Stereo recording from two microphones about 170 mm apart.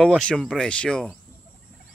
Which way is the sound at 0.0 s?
5° left (ahead or behind).